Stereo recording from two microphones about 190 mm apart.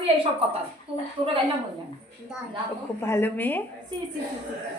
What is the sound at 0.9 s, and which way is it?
Laughter, 30° right (ahead or behind).